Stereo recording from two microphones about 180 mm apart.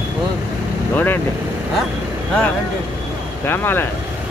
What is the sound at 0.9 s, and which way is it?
Speech, 10° left (ahead or behind).